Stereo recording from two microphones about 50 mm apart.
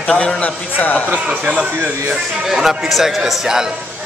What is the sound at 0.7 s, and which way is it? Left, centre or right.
Speech, left.